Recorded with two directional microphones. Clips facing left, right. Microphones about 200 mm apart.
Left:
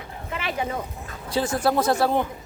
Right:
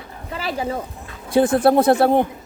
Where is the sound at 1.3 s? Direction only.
55° right (ahead or behind).